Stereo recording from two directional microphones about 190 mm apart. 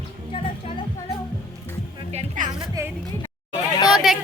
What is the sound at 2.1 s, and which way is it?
Music, 40° right (ahead or behind).